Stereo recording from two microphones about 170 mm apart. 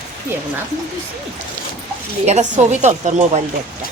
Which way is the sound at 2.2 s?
40° right (ahead or behind).